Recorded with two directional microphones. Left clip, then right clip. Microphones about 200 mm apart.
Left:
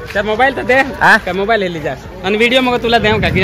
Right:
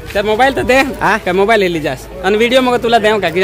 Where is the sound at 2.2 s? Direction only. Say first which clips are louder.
Right 1 dB; 25° right (ahead or behind).